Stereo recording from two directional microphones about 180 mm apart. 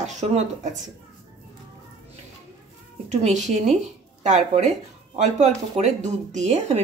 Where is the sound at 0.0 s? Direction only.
40° right (ahead or behind).